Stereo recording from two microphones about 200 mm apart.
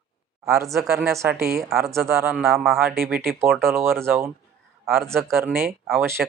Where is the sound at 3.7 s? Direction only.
10° right (ahead or behind).